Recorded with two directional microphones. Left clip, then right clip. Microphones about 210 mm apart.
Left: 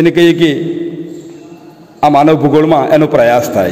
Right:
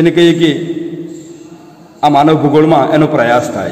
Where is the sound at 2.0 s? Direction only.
35° left (ahead or behind).